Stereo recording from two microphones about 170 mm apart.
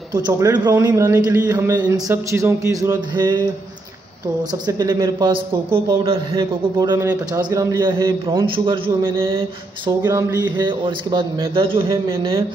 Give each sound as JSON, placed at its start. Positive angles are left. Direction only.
{"t": 0.1, "sound": "a man's voice", "side_deg": -25}
{"t": 8.0, "sound": "a man's voice", "side_deg": -30}
{"t": 9.0, "sound": "a sound", "side_deg": -15}
{"t": 9.3, "sound": "a man's voice", "side_deg": -30}
{"t": 10.0, "sound": "a man's voice", "side_deg": -15}
{"t": 11.9, "sound": "a man's voice", "side_deg": -20}